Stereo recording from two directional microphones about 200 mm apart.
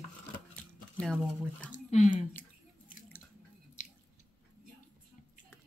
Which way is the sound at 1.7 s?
40° left (ahead or behind).